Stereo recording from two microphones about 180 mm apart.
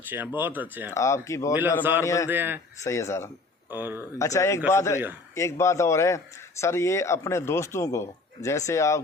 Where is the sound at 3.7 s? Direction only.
10° right (ahead or behind).